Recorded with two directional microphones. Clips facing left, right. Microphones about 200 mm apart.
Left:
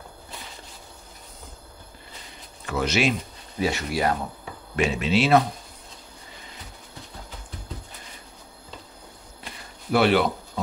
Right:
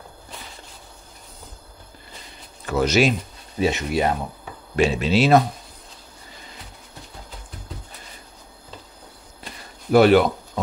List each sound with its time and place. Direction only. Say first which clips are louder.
2.6 s speech: right 5 dB; 40° right (ahead or behind)
3.5 s speech: right 4 dB; 20° right (ahead or behind)
4.7 s speech: right 3 dB; 30° right (ahead or behind)
9.9 s speech: right 6 dB; 45° right (ahead or behind)